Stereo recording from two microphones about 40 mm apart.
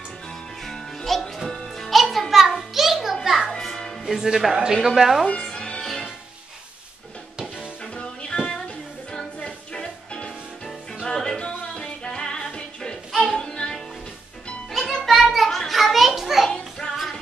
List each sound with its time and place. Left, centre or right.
0.7 s music: centre
2.3 s a sound: centre
3.3 s music: centre
4.0 s speech: centre
5.2 s music: centre
5.8 s music: centre
7.8 s music: left
9.8 s music: left
14.7 s music: centre
15.0 s children playing: centre
16.4 s music: centre